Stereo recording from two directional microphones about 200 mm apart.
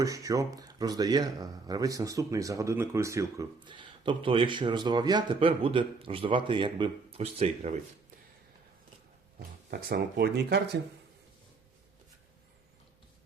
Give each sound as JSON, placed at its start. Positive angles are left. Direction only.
{"t": 0.0, "sound": "speech", "side_deg": -15}
{"t": 9.6, "sound": "speech", "side_deg": -55}